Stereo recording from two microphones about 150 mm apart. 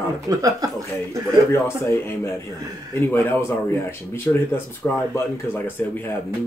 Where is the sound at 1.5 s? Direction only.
15° left (ahead or behind).